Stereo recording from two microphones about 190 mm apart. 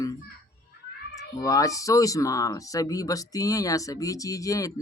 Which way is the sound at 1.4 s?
15° left (ahead or behind).